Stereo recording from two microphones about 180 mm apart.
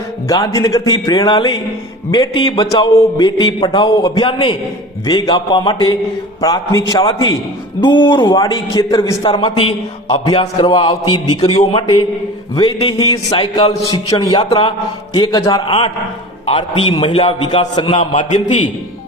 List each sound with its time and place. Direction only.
0.3 s a man's voice: 20° left (ahead or behind)
17.9 s a man's voice: 40° left (ahead or behind)